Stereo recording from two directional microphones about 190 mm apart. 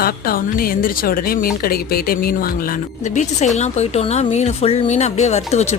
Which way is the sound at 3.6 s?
35° left (ahead or behind).